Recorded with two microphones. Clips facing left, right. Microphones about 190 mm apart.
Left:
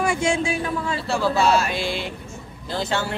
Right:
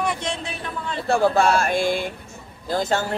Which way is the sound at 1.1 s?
55° right (ahead or behind).